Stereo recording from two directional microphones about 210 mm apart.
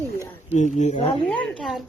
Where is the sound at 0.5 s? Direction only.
35° left (ahead or behind).